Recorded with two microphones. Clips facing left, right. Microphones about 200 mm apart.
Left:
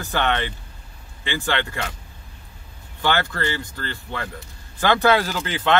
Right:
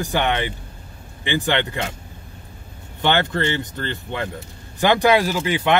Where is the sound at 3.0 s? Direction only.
20° right (ahead or behind).